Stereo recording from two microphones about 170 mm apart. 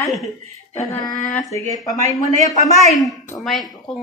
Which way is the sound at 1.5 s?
20° left (ahead or behind).